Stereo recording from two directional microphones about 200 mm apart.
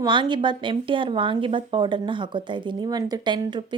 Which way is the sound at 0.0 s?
25° right (ahead or behind).